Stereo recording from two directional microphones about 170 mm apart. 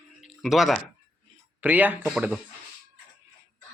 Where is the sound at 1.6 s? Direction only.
10° right (ahead or behind).